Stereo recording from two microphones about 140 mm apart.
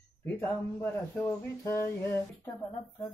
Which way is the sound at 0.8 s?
15° left (ahead or behind).